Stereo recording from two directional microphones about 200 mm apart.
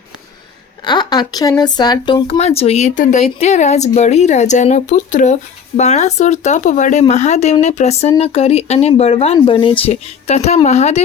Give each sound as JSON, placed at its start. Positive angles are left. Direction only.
{"t": 0.9, "sound": "speech", "side_deg": 20}
{"t": 2.4, "sound": "speech", "side_deg": 30}